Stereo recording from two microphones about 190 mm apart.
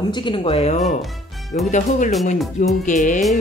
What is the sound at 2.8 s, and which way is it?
Speech, 40° left (ahead or behind).